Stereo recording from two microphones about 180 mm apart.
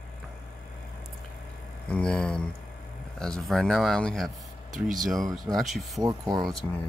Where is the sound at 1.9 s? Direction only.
5° left (ahead or behind).